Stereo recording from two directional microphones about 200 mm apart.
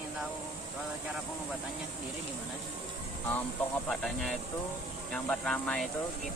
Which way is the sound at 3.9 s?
Centre (ahead or behind).